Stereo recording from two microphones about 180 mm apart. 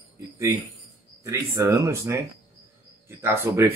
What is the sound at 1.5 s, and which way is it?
Speech, 15° right (ahead or behind).